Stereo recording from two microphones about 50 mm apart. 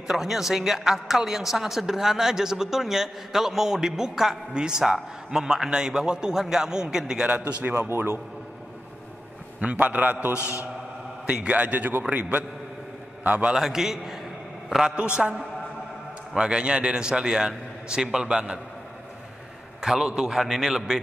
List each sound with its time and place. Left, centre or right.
0.0 s a woman's voice: centre
7.2 s a man's voice: right
7.6 s a man's voice: right
9.6 s a man's voice: right
10.3 s a man's voice: left
11.2 s a man's voice: right
13.6 s a woman's voice: centre
16.3 s a woman's voice: centre
19.8 s a woman's voice: centre